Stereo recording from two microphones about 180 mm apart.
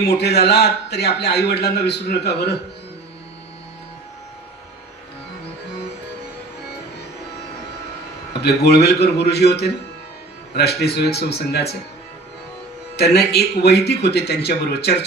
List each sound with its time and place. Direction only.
0.2 s a man's voice: 65° left (ahead or behind)
8.3 s speech: 65° left (ahead or behind)
13.0 s speech: 65° left (ahead or behind)